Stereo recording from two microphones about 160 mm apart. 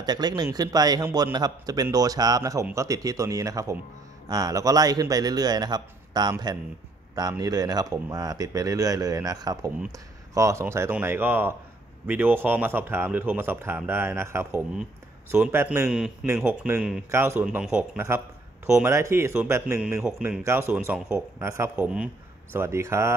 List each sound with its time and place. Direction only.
0.0 s speech: 25° right (ahead or behind)
15.9 s a man's voice: 5° right (ahead or behind)